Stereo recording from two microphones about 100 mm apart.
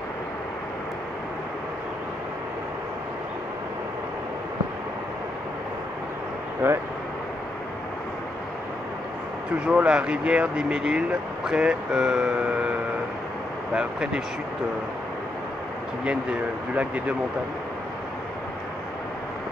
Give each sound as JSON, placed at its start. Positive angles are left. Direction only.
{"t": 6.6, "sound": "speech", "side_deg": -15}
{"t": 9.7, "sound": "speech", "side_deg": -10}
{"t": 13.7, "sound": "speech", "side_deg": -10}